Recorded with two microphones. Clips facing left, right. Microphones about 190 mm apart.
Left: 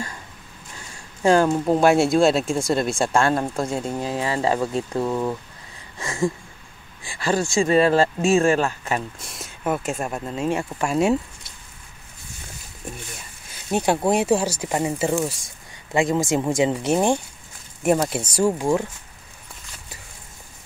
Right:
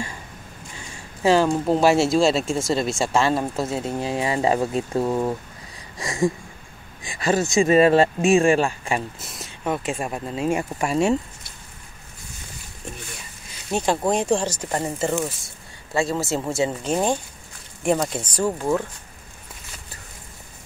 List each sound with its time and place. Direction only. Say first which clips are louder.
0.7 s speech: right 1 dB; 5° right (ahead or behind)
5.9 s a sound: right 1 dB; 15° right (ahead or behind)
7.1 s speech: right 1 dB; 20° right (ahead or behind); by 11.1 s centre (ahead or behind)
13.7 s speech: left 2 dB; 10° left (ahead or behind)